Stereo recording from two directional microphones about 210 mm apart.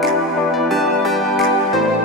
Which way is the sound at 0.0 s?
Centre (ahead or behind).